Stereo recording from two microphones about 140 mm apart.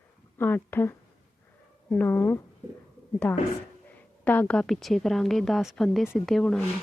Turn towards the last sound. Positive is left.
turn(degrees=5)  # may be behind; listen again after turning